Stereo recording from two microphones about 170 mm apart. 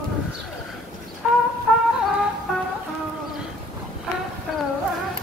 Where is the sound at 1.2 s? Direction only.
Centre (ahead or behind).